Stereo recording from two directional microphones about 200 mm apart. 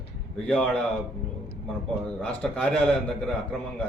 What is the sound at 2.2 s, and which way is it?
A man's voice, 5° left (ahead or behind).